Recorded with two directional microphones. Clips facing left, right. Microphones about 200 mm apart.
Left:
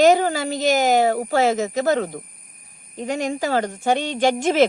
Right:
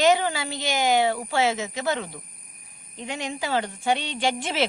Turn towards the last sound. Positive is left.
turn(degrees=45)  # may be behind; listen again after turning